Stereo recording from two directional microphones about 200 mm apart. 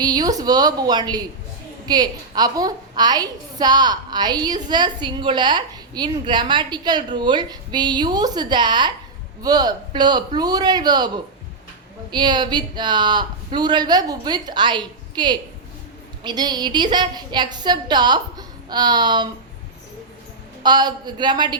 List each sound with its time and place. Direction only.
0.0 s a woman's voice: 20° right (ahead or behind)
12.1 s a woman's voice: 20° right (ahead or behind)
20.6 s a woman's voice: 20° right (ahead or behind)